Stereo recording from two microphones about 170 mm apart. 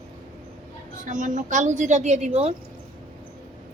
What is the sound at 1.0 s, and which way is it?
A woman's voice, 50° right (ahead or behind).